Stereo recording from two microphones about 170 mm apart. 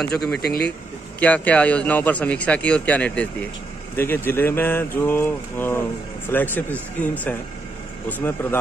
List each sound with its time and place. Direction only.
0.0 s speech: 5° left (ahead or behind)
0.4 s speech: 65° left (ahead or behind)
1.2 s speech: 10° left (ahead or behind)